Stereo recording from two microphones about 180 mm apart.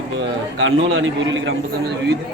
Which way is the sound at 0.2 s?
90° right.